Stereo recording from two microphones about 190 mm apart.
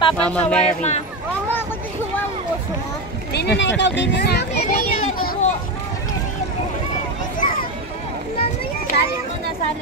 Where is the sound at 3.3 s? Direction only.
65° left (ahead or behind); by 4.9 s 50° left (ahead or behind).